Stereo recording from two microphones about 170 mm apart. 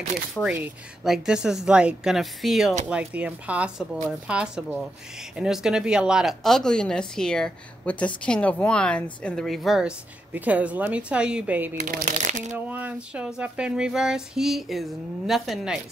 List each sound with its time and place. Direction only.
0.4 s a woman's voice: 10° right (ahead or behind)
11.8 s speech: 45° right (ahead or behind)
12.5 s a woman's voice: 10° right (ahead or behind)